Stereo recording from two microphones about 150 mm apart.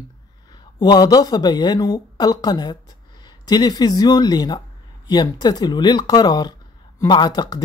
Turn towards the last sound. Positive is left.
turn(degrees=30)  # may be behind; listen again after turning